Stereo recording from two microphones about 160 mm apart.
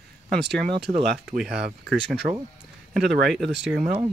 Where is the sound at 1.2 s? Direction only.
5° right (ahead or behind).